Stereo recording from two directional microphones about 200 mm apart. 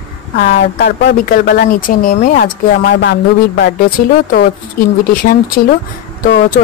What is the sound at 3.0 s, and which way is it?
Speech, 60° left (ahead or behind).